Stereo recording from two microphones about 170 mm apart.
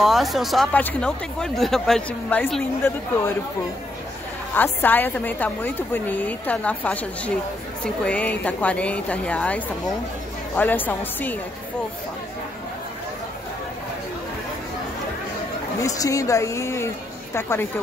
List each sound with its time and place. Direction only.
0.0 s speech: centre (ahead or behind)
4.6 s a woman's voice: 10° left (ahead or behind)
15.8 s a woman's voice: 20° left (ahead or behind)